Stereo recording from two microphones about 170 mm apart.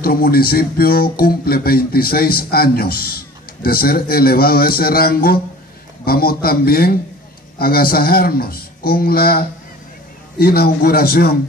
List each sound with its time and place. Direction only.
0.0 s speech: 60° left (ahead or behind)